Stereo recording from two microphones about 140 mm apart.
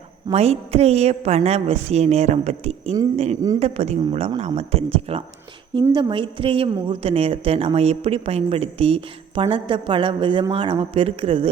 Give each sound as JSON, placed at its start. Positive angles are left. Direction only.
{"t": 0.3, "sound": "a woman's voice", "side_deg": -45}